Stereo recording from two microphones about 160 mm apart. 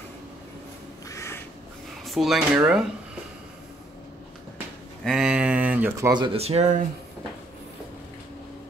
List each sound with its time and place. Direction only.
1.0 s crow: 20° left (ahead or behind)
2.0 s speech: centre (ahead or behind)
5.0 s speech: 5° right (ahead or behind); by 6.8 s 45° right (ahead or behind)